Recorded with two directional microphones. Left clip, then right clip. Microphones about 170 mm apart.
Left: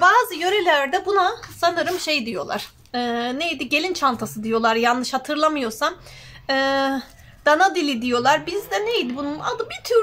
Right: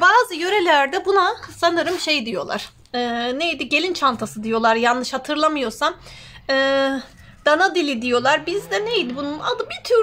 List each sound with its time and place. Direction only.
0.0 s a woman's voice: 40° right (ahead or behind)